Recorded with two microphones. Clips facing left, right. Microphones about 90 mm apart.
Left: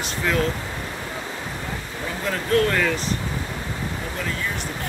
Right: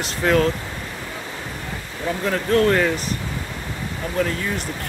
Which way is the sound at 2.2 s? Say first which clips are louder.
Right 3 dB; 35° right (ahead or behind).